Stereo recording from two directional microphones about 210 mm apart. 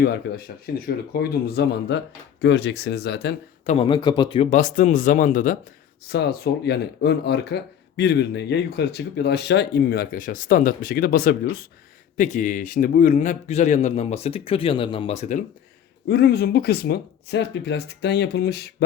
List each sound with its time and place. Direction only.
0.0 s speech: 45° left (ahead or behind)
3.7 s a man's voice: 25° left (ahead or behind)
6.1 s a man's voice: 50° left (ahead or behind); by 15.4 s 35° left (ahead or behind)
16.0 s speech: 50° left (ahead or behind)